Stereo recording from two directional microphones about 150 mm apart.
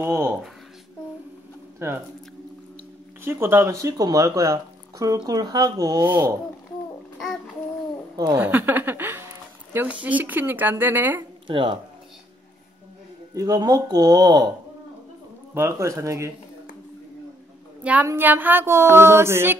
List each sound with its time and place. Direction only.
0.0 s a woman's voice: 15° right (ahead or behind)
1.8 s a woman's voice: 15° right (ahead or behind)
3.3 s speech: 15° right (ahead or behind)
6.0 s a woman's voice: 15° right (ahead or behind)
8.4 s a sound: 10° right (ahead or behind)
10.0 s a woman's voice: 10° right (ahead or behind)
11.4 s speech: 35° right (ahead or behind)
13.3 s speech: 20° right (ahead or behind)
15.5 s speech: 20° right (ahead or behind)
18.0 s a woman's voice: 15° right (ahead or behind)